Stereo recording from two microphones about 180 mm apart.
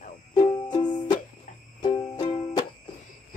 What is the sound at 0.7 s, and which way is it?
Music, 25° left (ahead or behind).